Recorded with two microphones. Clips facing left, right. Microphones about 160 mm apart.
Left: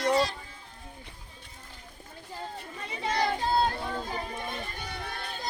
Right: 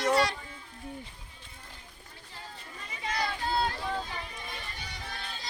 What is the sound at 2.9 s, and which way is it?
Children playing, 30° left (ahead or behind).